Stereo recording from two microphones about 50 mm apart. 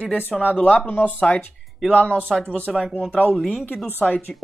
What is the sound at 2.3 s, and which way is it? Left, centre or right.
Speech, centre.